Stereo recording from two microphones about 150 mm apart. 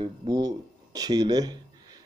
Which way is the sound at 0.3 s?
25° right (ahead or behind).